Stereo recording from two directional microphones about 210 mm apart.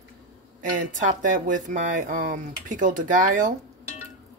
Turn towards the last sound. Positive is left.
turn(degrees=-40)  # may be behind; listen again after turning